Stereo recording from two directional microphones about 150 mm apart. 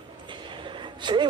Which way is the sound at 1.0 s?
30° right (ahead or behind).